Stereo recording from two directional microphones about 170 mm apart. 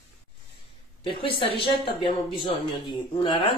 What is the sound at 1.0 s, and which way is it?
Speech, 30° left (ahead or behind).